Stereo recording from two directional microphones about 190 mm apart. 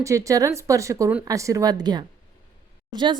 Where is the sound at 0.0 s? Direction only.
15° right (ahead or behind).